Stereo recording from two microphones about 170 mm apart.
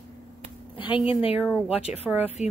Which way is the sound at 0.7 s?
30° left (ahead or behind).